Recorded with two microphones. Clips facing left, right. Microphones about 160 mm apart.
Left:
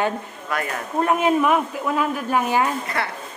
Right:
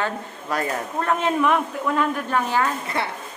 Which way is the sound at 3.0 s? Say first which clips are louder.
Right 2 dB; 25° right (ahead or behind).